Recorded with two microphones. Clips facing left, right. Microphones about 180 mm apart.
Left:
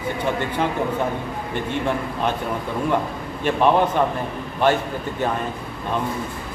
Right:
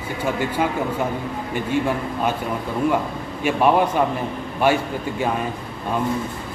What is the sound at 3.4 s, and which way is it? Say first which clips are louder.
A man's voice: even; 10° right (ahead or behind).